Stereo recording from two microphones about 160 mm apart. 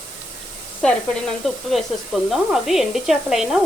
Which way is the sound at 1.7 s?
Centre (ahead or behind).